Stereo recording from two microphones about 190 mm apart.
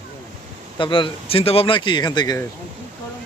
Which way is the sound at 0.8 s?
25° left (ahead or behind).